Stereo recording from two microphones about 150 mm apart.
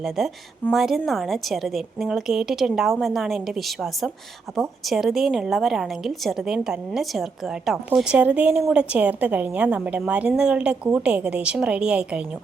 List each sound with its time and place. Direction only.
0.2 s a woman's voice: centre (ahead or behind)